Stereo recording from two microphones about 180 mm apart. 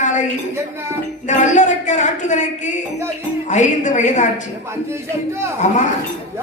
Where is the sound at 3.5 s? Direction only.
40° left (ahead or behind).